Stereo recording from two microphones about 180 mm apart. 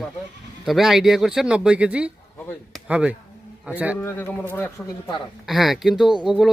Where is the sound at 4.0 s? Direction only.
10° left (ahead or behind).